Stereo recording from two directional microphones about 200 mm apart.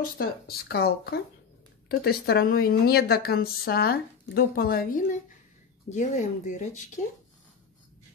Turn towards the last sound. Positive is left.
turn(degrees=35)  # may be behind; listen again after turning